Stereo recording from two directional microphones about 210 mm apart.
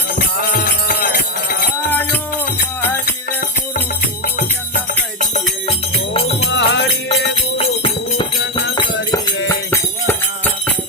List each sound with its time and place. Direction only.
0.5 s music: 45° left (ahead or behind)
5.2 s music: 35° left (ahead or behind)
6.5 s music: 55° left (ahead or behind)
7.6 s music: 25° left (ahead or behind)
9.6 s music: 10° left (ahead or behind)